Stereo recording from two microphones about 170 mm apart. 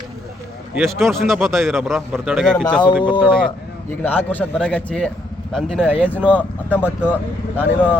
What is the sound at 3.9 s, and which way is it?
A man's voice, 10° left (ahead or behind).